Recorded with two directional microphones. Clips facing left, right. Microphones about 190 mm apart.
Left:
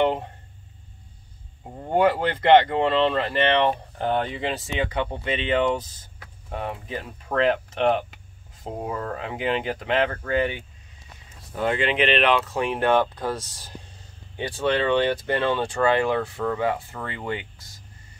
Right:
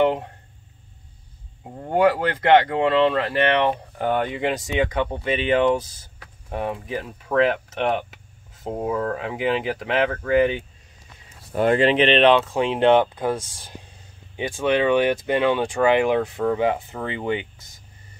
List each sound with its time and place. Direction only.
0.0 s a sound: centre (ahead or behind)
2.0 s speech: 10° right (ahead or behind)
11.7 s speech: 35° right (ahead or behind); by 17.8 s 20° right (ahead or behind)